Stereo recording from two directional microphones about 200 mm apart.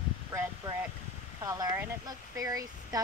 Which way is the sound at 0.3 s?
15° right (ahead or behind).